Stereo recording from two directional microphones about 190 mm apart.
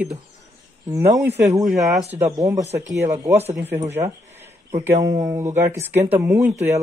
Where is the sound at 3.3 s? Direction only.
35° right (ahead or behind).